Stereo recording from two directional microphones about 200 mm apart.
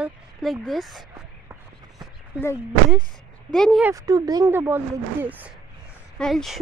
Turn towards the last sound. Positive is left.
turn(degrees=0)  # may be behind; listen again after turning